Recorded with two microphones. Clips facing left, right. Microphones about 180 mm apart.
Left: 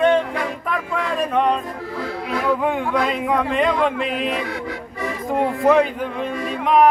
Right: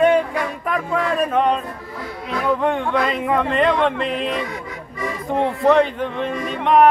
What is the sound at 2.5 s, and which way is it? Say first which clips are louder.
Speech: right 2 dB; 5° left (ahead or behind).